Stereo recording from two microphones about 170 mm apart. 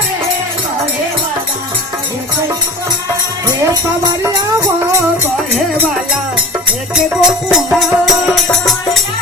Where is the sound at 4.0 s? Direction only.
20° right (ahead or behind).